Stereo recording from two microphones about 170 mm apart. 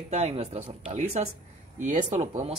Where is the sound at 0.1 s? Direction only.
40° right (ahead or behind).